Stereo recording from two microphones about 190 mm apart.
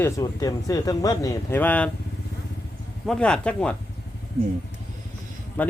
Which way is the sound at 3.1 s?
5° left (ahead or behind).